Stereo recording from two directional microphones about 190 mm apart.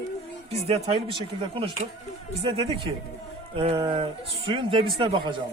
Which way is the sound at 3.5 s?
30° right (ahead or behind).